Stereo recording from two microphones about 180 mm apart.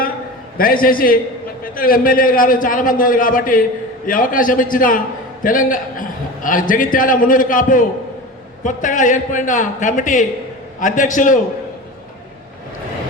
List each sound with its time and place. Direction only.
0.5 s a man's voice: 55° left (ahead or behind)